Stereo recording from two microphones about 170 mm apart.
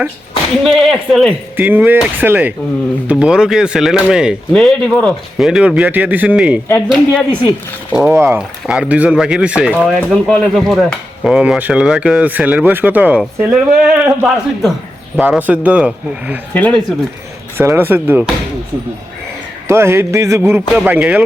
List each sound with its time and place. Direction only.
0.6 s speech: centre (ahead or behind)
1.5 s a man's voice: 10° right (ahead or behind)
7.9 s a man's voice: 15° right (ahead or behind)
16.6 s speech: 10° left (ahead or behind)
17.6 s a man's voice: 15° right (ahead or behind)
19.6 s a man's voice: 15° right (ahead or behind)